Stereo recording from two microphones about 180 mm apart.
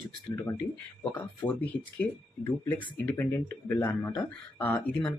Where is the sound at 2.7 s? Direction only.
10° left (ahead or behind).